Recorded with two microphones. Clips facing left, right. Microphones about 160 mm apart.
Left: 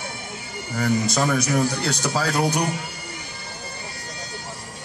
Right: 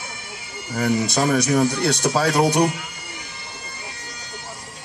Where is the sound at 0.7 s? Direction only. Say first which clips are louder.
Right 1 dB; 35° right (ahead or behind).